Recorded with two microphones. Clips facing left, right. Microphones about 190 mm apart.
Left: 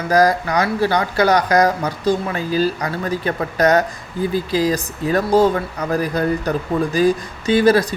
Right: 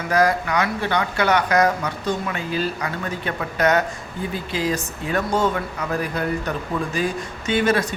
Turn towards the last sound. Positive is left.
turn(degrees=35)  # may be behind; listen again after turning